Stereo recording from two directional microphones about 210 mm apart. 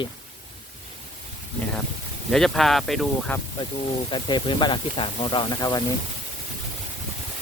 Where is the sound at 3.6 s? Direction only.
20° left (ahead or behind).